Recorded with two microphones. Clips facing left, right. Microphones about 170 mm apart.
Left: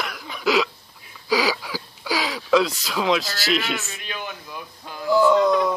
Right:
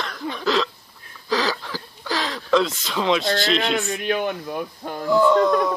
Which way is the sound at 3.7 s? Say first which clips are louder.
Right 10 dB; 55° right (ahead or behind).